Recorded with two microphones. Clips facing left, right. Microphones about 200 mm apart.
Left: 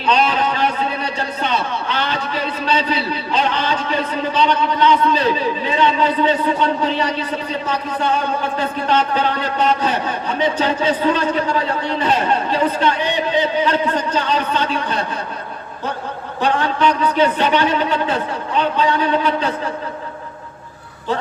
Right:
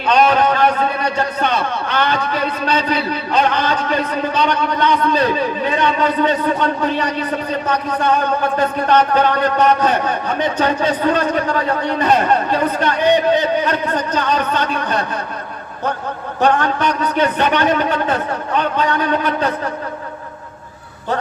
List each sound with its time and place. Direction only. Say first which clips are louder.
0.0 s a man's voice: right 4 dB; 55° right (ahead or behind)
16.4 s a man's voice: right 2 dB; 50° right (ahead or behind)